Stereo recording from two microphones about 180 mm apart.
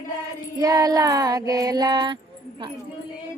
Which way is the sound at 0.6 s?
20° right (ahead or behind).